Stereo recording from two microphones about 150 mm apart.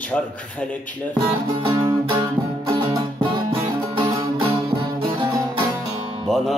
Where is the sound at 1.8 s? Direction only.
25° right (ahead or behind).